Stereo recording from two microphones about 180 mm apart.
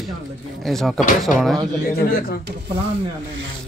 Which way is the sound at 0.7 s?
Centre (ahead or behind).